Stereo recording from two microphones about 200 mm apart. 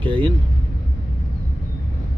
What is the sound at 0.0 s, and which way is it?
Speech, 25° right (ahead or behind).